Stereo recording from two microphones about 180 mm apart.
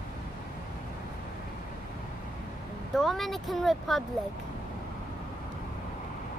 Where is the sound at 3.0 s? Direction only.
Centre (ahead or behind).